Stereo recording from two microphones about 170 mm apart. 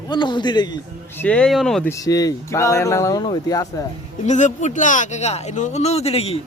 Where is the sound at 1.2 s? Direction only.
5° left (ahead or behind).